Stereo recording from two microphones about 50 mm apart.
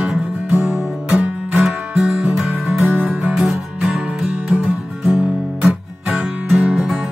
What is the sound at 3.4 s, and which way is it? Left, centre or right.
Music, centre.